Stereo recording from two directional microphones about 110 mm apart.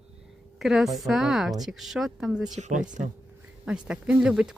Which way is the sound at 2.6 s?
90° right.